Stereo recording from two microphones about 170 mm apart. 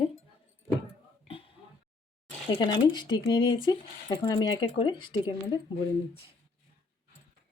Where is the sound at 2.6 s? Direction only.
25° left (ahead or behind).